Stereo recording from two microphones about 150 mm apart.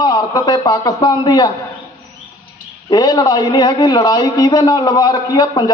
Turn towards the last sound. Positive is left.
turn(degrees=25)  # may be behind; listen again after turning